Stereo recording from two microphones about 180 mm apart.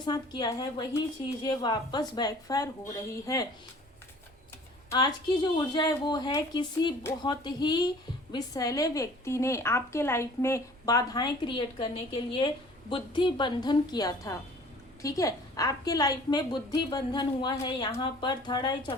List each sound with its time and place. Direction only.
0.0 s a woman's voice: 25° left (ahead or behind)
4.9 s a woman's voice: 25° left (ahead or behind)